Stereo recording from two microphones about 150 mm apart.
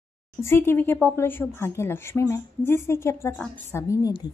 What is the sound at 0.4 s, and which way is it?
A woman's voice, 15° left (ahead or behind).